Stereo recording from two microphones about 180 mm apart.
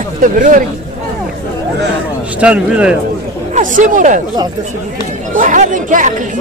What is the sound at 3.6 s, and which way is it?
Speech, 45° right (ahead or behind).